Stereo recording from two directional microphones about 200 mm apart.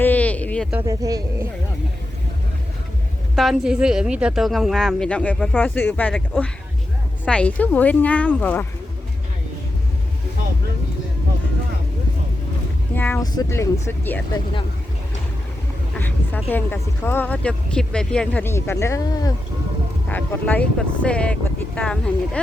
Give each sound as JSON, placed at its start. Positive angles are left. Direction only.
{"t": 0.0, "sound": "a sound", "side_deg": 5}
{"t": 0.7, "sound": "speech", "side_deg": -15}
{"t": 3.3, "sound": "speech", "side_deg": 0}
{"t": 7.3, "sound": "speech", "side_deg": 5}
{"t": 12.9, "sound": "speech", "side_deg": 10}
{"t": 16.0, "sound": "speech", "side_deg": 10}